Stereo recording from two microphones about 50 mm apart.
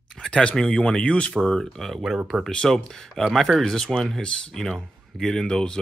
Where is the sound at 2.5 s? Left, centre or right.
Centre.